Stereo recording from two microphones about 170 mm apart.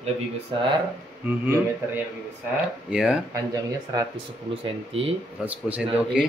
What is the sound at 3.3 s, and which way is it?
Speech, 20° right (ahead or behind).